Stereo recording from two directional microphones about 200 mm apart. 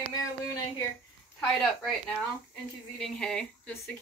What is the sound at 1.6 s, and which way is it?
Speech, centre (ahead or behind).